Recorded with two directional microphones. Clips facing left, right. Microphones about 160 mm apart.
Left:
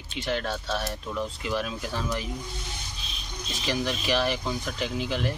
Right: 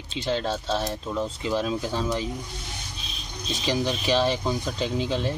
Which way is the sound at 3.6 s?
20° right (ahead or behind).